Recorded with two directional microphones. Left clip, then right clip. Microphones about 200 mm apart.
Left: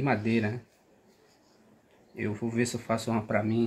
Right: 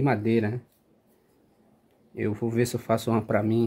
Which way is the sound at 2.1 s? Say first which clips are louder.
Right 4 dB; 65° right (ahead or behind).